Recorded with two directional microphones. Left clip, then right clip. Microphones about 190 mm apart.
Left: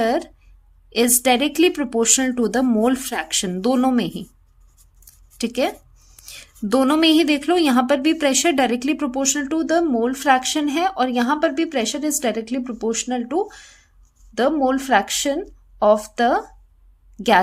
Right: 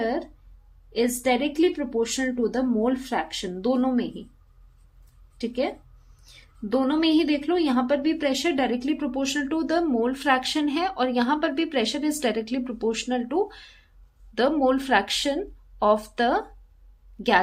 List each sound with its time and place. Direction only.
0.0 s a sound: 45° left (ahead or behind)
0.9 s speech: 45° left (ahead or behind)
5.4 s a woman's voice: 45° left (ahead or behind); by 16.4 s 25° left (ahead or behind)